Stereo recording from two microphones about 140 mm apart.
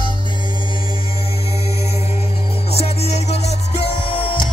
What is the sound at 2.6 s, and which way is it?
Music, 45° left (ahead or behind).